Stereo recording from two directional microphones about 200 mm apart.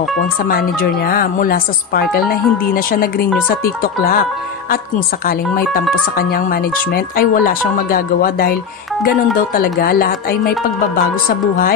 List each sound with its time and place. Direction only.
0.4 s speech: 45° left (ahead or behind)